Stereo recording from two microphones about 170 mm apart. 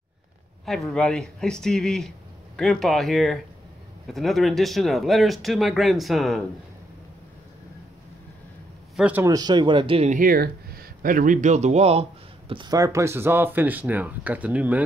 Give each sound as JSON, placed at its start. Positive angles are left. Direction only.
{"t": 0.7, "sound": "speech", "side_deg": 0}
{"t": 8.9, "sound": "a man's voice", "side_deg": -10}
{"t": 9.3, "sound": "speech", "side_deg": -25}
{"t": 10.1, "sound": "speech", "side_deg": -60}